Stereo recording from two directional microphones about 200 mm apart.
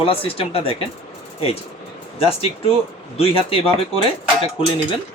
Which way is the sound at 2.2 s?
30° left (ahead or behind).